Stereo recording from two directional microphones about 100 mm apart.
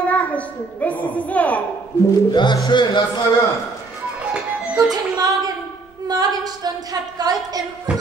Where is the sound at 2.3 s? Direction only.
45° left (ahead or behind).